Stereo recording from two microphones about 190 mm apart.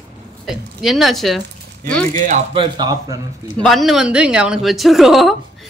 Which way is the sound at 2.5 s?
25° right (ahead or behind).